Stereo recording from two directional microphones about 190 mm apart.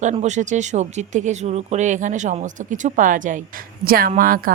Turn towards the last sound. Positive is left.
turn(degrees=-50)  # may be behind; listen again after turning